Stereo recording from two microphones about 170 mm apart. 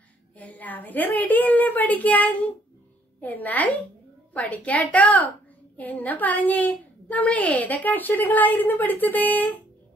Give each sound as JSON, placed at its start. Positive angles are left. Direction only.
{"t": 0.4, "sound": "a woman's voice", "side_deg": 10}